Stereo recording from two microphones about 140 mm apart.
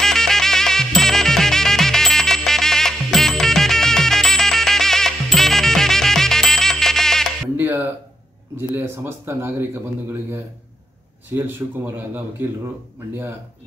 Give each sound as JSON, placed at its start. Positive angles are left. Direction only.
{"t": 0.0, "sound": "music", "side_deg": 5}
{"t": 7.5, "sound": "a sound", "side_deg": -15}
{"t": 8.5, "sound": "speech", "side_deg": -15}
{"t": 11.3, "sound": "speech", "side_deg": -15}